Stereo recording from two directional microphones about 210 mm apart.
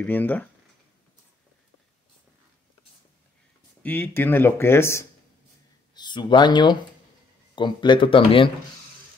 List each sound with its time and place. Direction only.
0.0 s speech: 10° left (ahead or behind)
3.8 s speech: 10° left (ahead or behind)